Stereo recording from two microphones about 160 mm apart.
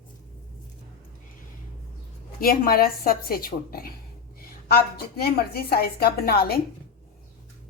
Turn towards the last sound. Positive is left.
turn(degrees=75)  # may be behind; listen again after turning